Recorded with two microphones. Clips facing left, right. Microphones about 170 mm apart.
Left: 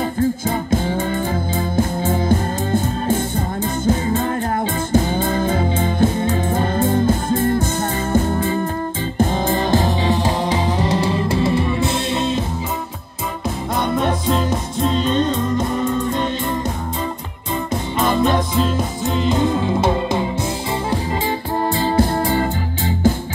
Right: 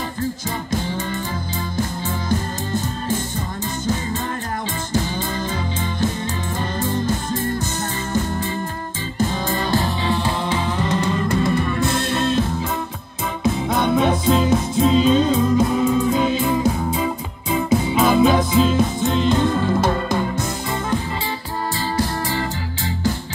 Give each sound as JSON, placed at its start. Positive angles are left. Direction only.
{"t": 0.2, "sound": "music", "side_deg": 50}
{"t": 2.2, "sound": "music", "side_deg": 55}
{"t": 4.9, "sound": "music", "side_deg": 55}
{"t": 11.1, "sound": "music", "side_deg": 10}
{"t": 11.4, "sound": "music", "side_deg": 25}
{"t": 13.4, "sound": "music", "side_deg": 0}
{"t": 19.8, "sound": "music", "side_deg": 20}
{"t": 21.9, "sound": "music", "side_deg": 55}